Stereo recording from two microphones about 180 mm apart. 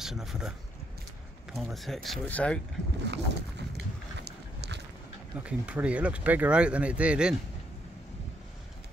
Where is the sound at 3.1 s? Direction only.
70° right (ahead or behind).